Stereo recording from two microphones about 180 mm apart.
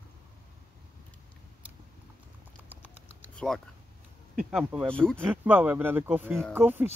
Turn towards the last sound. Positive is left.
turn(degrees=-10)  # may be behind; listen again after turning